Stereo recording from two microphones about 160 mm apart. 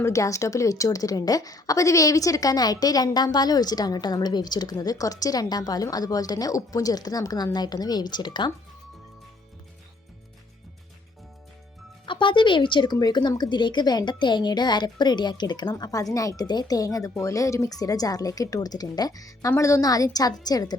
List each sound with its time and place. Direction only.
0.0 s a woman's voice: 20° left (ahead or behind)
12.0 s a woman's voice: 30° left (ahead or behind)